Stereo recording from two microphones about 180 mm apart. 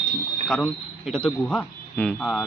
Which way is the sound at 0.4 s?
Centre (ahead or behind).